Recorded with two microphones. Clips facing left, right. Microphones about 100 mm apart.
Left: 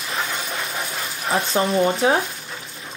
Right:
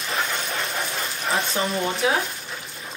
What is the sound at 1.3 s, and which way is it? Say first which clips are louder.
Speech: left 6 dB; 30° left (ahead or behind).